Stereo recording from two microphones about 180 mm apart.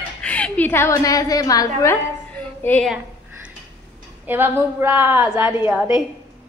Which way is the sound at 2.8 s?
5° right (ahead or behind).